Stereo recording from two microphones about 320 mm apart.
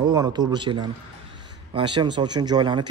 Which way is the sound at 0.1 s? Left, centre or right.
Centre.